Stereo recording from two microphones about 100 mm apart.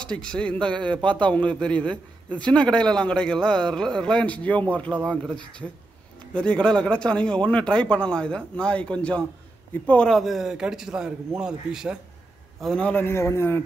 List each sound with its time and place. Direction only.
0.0 s a man's voice: 10° left (ahead or behind)
10.0 s a man's voice: centre (ahead or behind)
12.7 s a man's voice: 15° left (ahead or behind)